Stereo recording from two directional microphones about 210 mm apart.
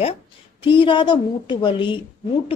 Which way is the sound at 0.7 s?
25° left (ahead or behind).